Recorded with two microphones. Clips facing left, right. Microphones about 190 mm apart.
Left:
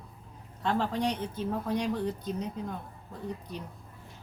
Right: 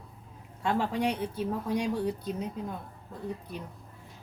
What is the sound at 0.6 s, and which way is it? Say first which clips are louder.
Speech: right 1 dB; 10° right (ahead or behind).